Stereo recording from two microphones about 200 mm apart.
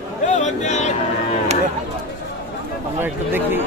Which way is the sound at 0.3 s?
35° left (ahead or behind).